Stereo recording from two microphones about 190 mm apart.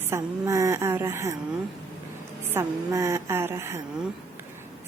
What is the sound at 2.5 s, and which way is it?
Speech, 15° right (ahead or behind).